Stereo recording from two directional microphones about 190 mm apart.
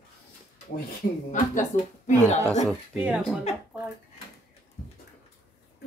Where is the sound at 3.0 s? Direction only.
5° right (ahead or behind).